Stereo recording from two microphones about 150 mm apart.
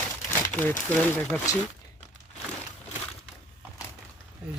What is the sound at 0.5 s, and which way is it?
Speech, 15° left (ahead or behind).